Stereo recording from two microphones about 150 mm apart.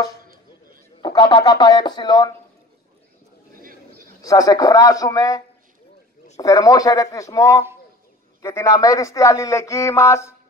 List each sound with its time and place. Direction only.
1.0 s speech: 30° left (ahead or behind)
4.2 s speech: 25° left (ahead or behind)